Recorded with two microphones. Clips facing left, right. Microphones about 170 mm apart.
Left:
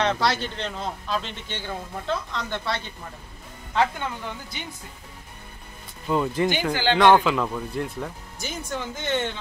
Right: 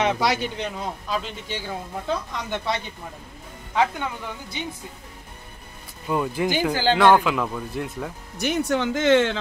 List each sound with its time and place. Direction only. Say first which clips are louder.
0.0 s speech: right 1 dB; 15° right (ahead or behind)
6.0 s speech: left 1 dB; 5° right (ahead or behind)
6.7 s speech: right 2 dB; 40° right (ahead or behind)
7.0 s speech: left 1 dB; 5° right (ahead or behind)
8.4 s speech: right 9 dB; 65° right (ahead or behind); by 9.4 s 90° right